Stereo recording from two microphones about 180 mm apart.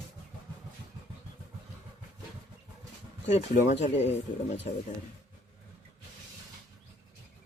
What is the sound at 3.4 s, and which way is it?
Speech, 40° left (ahead or behind).